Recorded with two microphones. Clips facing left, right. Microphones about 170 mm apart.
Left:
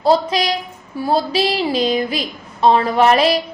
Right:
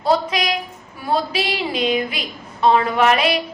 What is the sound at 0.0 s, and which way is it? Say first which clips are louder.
A woman's voice: left 3 dB; 35° left (ahead or behind).